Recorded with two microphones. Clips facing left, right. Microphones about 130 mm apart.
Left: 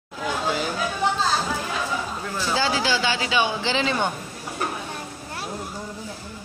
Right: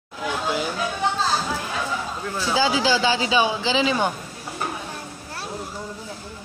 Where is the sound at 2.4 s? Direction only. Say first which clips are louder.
Right 3 dB; 10° right (ahead or behind).